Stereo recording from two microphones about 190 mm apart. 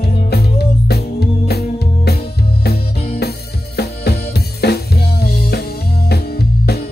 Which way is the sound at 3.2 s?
60° left (ahead or behind).